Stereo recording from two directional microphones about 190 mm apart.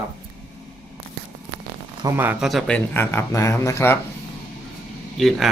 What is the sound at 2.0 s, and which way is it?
Speech, 15° right (ahead or behind).